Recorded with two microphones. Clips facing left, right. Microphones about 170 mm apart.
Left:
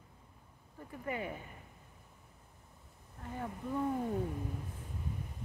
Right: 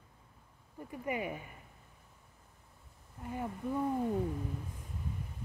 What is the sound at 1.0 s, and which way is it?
Speech, 15° right (ahead or behind).